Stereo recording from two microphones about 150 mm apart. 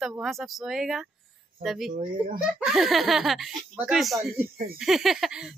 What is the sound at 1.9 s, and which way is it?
Speech, 65° right (ahead or behind).